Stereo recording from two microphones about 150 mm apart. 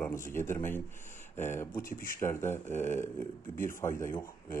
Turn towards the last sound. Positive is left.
turn(degrees=20)  # may be behind; listen again after turning